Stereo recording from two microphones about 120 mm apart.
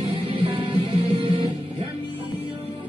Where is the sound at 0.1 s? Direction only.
50° right (ahead or behind).